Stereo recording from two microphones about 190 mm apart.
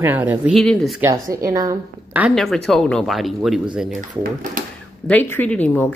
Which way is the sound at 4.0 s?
45° right (ahead or behind).